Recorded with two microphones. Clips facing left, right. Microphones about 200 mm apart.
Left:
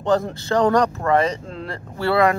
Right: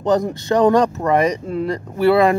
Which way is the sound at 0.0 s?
20° right (ahead or behind).